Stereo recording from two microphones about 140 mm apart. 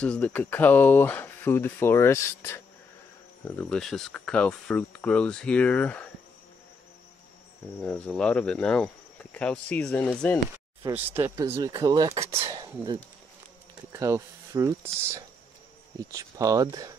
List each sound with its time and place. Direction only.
0.0 s speech: 10° left (ahead or behind)
3.4 s speech: 10° left (ahead or behind)
7.8 s speech: 10° left (ahead or behind)
10.9 s speech: 15° right (ahead or behind)
11.5 s speech: 25° right (ahead or behind)
12.1 s speech: 45° right (ahead or behind)
12.4 s speech: 30° right (ahead or behind)